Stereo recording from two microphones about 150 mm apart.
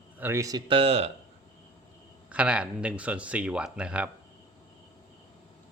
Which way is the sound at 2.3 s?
10° right (ahead or behind).